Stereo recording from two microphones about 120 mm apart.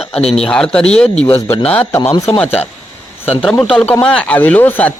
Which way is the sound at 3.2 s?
15° left (ahead or behind).